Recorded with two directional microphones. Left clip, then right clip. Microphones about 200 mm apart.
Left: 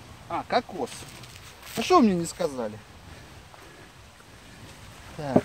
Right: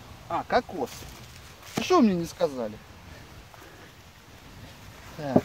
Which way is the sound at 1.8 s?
15° left (ahead or behind).